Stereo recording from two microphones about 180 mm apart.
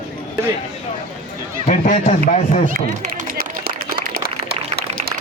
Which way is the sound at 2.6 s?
45° right (ahead or behind).